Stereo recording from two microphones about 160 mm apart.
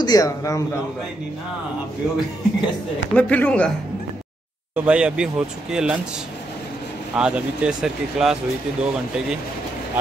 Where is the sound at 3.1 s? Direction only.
10° left (ahead or behind).